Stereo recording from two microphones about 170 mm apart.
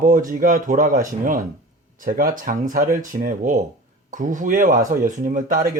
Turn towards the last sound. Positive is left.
turn(degrees=-50)  # may be behind; listen again after turning